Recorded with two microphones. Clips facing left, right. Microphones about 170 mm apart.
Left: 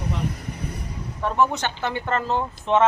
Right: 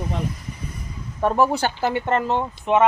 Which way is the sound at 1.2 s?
35° right (ahead or behind).